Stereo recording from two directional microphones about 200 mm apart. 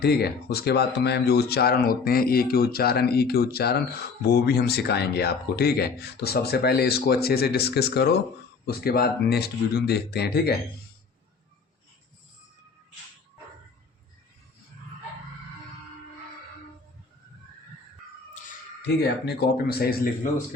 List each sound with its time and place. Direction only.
0.0 s speech: 55° left (ahead or behind)
18.9 s speech: 55° left (ahead or behind)